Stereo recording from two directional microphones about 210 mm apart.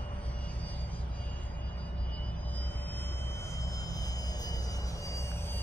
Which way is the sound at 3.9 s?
15° left (ahead or behind).